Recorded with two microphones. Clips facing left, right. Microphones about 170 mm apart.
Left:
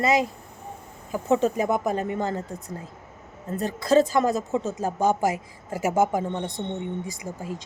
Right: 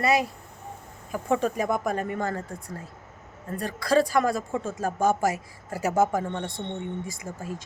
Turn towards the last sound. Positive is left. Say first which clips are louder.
# left 2 dB
turn(degrees=15)  # may be behind; listen again after turning